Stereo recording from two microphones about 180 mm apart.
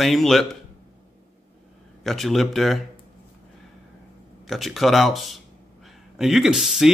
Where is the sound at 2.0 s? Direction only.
Centre (ahead or behind).